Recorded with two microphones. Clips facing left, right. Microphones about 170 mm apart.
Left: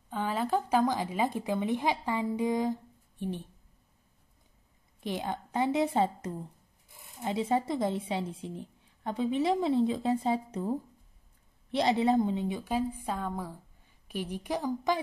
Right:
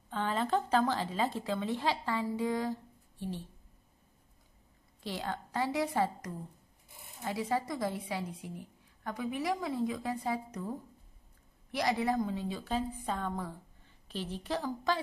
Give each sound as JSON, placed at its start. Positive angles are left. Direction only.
{"t": 0.1, "sound": "a woman's voice", "side_deg": 10}
{"t": 5.0, "sound": "a woman's voice", "side_deg": 20}